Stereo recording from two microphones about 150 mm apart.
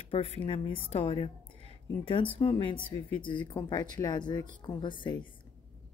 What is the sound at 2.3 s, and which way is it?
Speech, 35° left (ahead or behind).